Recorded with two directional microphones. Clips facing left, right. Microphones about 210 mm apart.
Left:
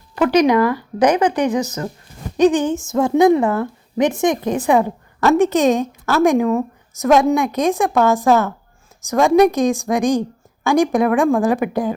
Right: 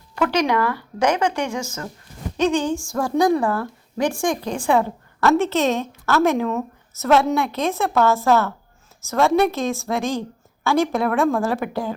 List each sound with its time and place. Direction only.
0.2 s a woman's voice: 15° left (ahead or behind)
2.4 s a woman's voice: 15° left (ahead or behind)